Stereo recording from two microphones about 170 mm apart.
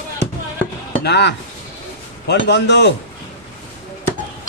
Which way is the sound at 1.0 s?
85° left.